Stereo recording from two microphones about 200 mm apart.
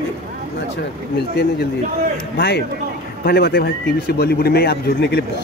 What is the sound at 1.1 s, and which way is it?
Speech, 55° left (ahead or behind).